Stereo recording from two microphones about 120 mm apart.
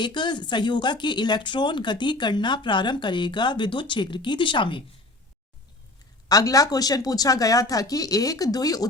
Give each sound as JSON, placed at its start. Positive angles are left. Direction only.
{"t": 0.0, "sound": "speech", "side_deg": 40}
{"t": 6.2, "sound": "speech", "side_deg": 30}